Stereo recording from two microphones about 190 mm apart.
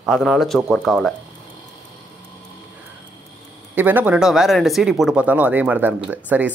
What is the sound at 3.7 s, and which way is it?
Speech, 10° right (ahead or behind).